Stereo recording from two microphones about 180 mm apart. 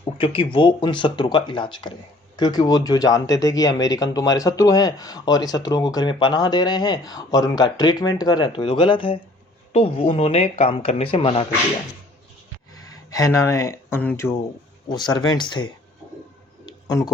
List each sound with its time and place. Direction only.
0.0 s speech: 30° left (ahead or behind)
12.7 s speech: 20° left (ahead or behind)
14.8 s speech: 25° left (ahead or behind)
16.6 s a sound: 20° left (ahead or behind)